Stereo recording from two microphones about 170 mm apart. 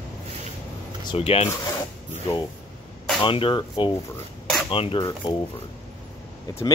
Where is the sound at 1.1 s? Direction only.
35° left (ahead or behind).